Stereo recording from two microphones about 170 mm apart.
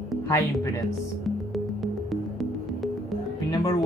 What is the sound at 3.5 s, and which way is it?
Speech, 20° left (ahead or behind).